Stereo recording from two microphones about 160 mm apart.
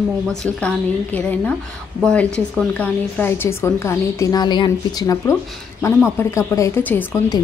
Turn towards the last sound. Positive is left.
turn(degrees=10)  # may be behind; listen again after turning